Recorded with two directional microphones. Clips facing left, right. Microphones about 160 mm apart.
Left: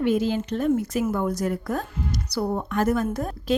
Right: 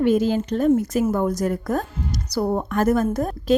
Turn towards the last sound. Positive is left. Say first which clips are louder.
# right 4 dB
turn(degrees=-40)  # may be behind; listen again after turning